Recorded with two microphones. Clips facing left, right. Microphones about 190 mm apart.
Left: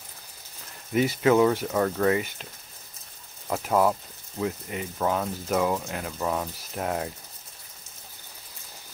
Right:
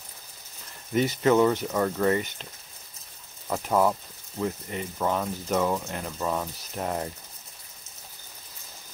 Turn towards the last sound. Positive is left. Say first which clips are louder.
# left 1 dB
turn(degrees=5)  # may be behind; listen again after turning